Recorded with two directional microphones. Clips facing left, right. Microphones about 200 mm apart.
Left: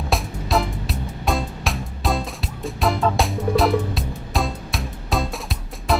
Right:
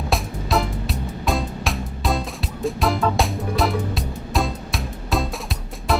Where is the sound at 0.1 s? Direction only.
Centre (ahead or behind).